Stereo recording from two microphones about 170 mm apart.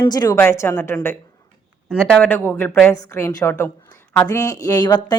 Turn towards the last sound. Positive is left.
turn(degrees=25)  # may be behind; listen again after turning